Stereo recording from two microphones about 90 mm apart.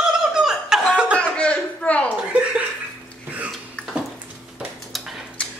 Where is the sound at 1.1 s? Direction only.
15° left (ahead or behind).